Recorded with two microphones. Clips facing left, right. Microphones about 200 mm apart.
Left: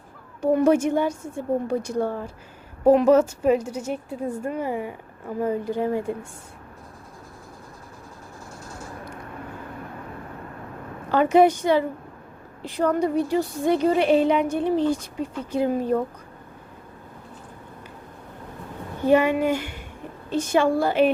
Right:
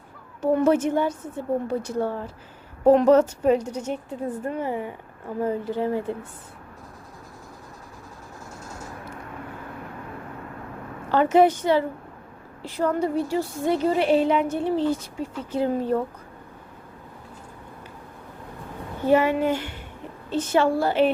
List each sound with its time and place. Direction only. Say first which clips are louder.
0.4 s a woman's voice: left 1 dB; 15° left (ahead or behind)
11.1 s a woman's voice: left 1 dB; 15° left (ahead or behind)
19.0 s a woman's voice: left 1 dB; 15° left (ahead or behind)